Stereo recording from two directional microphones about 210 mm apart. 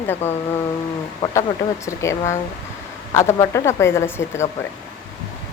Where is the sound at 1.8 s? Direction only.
15° left (ahead or behind).